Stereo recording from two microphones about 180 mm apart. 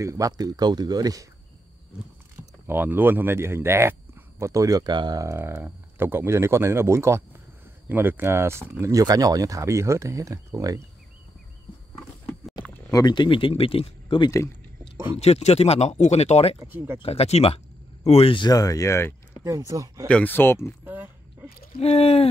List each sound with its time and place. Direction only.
0.0 s speech: 15° right (ahead or behind)
2.6 s speech: 10° right (ahead or behind)
12.9 s speech: 25° left (ahead or behind)
16.5 s speech: 10° right (ahead or behind)
17.0 s speech: 35° left (ahead or behind); by 19.4 s 15° left (ahead or behind)
19.4 s speech: 20° right (ahead or behind)
20.1 s speech: 10° left (ahead or behind)
20.8 s a sound: 10° right (ahead or behind)
21.7 s speech: 35° left (ahead or behind)